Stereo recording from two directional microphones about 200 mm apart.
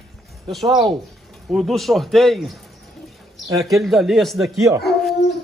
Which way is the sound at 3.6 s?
Centre (ahead or behind).